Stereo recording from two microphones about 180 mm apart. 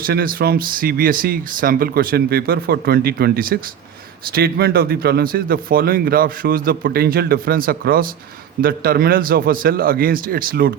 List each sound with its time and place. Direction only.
0.0 s speech: 55° right (ahead or behind)